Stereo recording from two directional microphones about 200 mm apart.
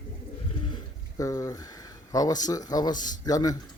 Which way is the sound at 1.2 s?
15° left (ahead or behind).